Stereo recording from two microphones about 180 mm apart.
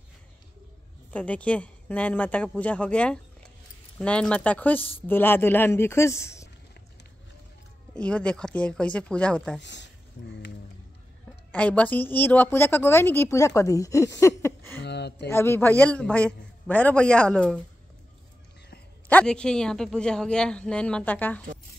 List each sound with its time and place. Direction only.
1.1 s a woman's voice: 5° left (ahead or behind)
7.9 s a woman's voice: 5° left (ahead or behind)
9.6 s speech: 80° left
11.5 s a woman's voice: 5° left (ahead or behind)
14.2 s a sound: 15° left (ahead or behind)
14.8 s a sound: 70° left (ahead or behind)
15.2 s a woman's voice: 15° left (ahead or behind)
19.0 s speech: 5° left (ahead or behind)